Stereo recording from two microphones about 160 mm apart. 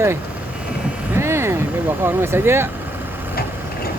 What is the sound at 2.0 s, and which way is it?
Speech, 15° right (ahead or behind).